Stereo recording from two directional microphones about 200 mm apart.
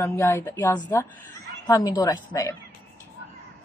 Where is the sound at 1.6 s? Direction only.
15° left (ahead or behind).